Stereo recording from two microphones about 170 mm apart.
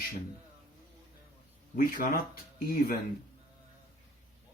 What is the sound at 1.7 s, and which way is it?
Speech, 55° left (ahead or behind).